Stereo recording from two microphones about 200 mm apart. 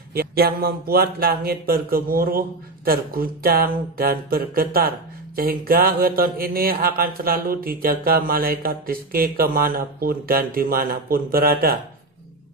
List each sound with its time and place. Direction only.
0.1 s speech: 50° right (ahead or behind)